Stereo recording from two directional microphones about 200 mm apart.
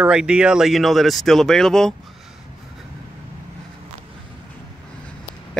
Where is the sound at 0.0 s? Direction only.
5° right (ahead or behind).